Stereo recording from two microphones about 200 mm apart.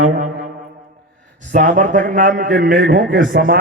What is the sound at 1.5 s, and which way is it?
A man's voice, 40° right (ahead or behind).